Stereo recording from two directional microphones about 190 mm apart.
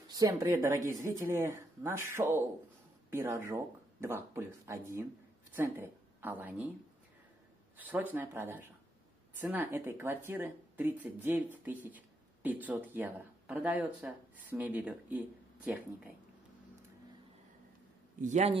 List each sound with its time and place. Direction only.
0.2 s a woman's voice: 15° right (ahead or behind)
7.7 s speech: 10° right (ahead or behind)
18.2 s a man's voice: 35° right (ahead or behind)